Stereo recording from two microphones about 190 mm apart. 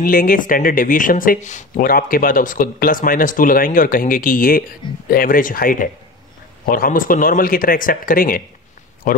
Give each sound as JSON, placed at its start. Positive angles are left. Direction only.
{"t": 0.0, "sound": "speech", "side_deg": 45}